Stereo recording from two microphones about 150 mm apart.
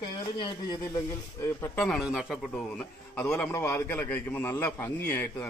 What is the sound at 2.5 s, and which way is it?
A man's voice, 10° left (ahead or behind).